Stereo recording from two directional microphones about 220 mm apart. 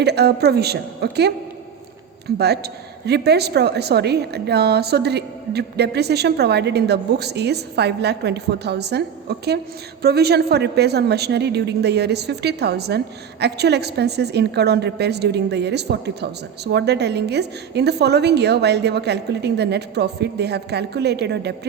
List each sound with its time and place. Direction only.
0.0 s a woman's voice: 50° right (ahead or behind)